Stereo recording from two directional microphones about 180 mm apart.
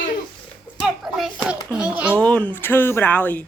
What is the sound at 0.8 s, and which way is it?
Hands, centre (ahead or behind).